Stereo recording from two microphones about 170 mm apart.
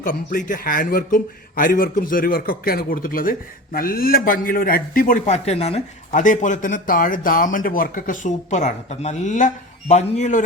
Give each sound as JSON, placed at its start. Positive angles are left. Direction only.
{"t": 0.0, "sound": "a man's voice", "side_deg": 55}